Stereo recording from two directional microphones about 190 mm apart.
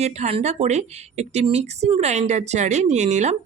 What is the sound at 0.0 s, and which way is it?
A woman's voice, 35° right (ahead or behind).